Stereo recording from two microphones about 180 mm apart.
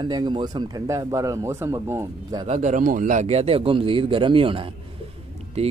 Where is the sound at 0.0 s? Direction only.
25° right (ahead or behind).